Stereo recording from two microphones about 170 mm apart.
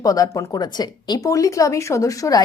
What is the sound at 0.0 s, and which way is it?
Speech, 20° left (ahead or behind).